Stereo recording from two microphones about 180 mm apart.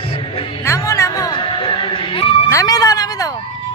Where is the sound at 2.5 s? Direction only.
20° left (ahead or behind).